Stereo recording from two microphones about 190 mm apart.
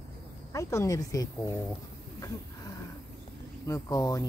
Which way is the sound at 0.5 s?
15° left (ahead or behind).